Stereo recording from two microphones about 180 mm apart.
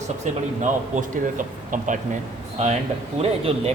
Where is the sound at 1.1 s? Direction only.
45° right (ahead or behind).